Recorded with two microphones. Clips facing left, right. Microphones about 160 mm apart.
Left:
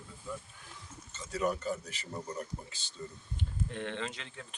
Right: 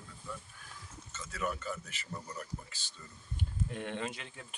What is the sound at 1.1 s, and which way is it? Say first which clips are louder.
Speech: left 5 dB; 35° left (ahead or behind).